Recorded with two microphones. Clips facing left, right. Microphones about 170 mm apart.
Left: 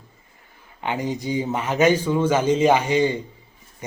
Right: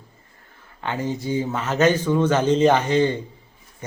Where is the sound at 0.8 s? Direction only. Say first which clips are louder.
Even; 15° left (ahead or behind).